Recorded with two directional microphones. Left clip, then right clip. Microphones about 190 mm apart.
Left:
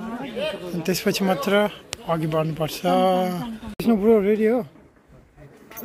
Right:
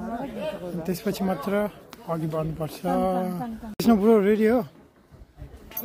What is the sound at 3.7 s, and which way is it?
Speech, 15° right (ahead or behind).